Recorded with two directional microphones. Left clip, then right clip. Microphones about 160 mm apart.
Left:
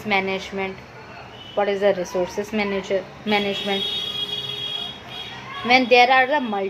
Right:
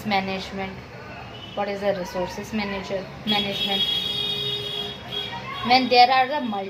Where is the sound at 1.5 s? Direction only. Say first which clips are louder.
Left 5 dB; 30° left (ahead or behind).